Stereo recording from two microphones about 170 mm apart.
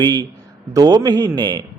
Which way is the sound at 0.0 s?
25° right (ahead or behind).